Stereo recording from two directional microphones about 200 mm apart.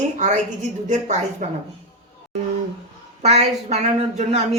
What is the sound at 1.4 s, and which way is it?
Speech, 40° right (ahead or behind).